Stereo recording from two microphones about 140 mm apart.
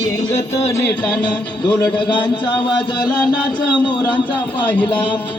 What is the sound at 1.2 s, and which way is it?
Music, 35° left (ahead or behind).